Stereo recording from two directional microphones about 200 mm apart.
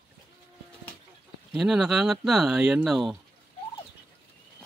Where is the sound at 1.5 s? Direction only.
Centre (ahead or behind).